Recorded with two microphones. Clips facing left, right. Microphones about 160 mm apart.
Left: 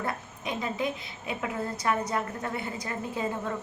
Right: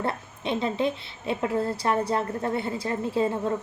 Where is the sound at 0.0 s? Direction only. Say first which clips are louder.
Right 4 dB; 30° right (ahead or behind).